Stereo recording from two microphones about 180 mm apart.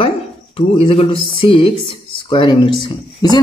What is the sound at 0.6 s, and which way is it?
Speech, 30° left (ahead or behind).